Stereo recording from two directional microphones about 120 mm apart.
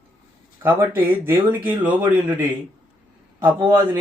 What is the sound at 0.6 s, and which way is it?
Speech, 15° right (ahead or behind).